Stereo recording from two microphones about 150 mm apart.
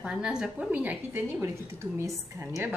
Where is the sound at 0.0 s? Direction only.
5° right (ahead or behind).